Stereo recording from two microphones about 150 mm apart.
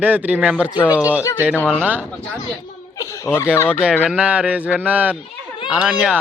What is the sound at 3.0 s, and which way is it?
Speech, 20° left (ahead or behind).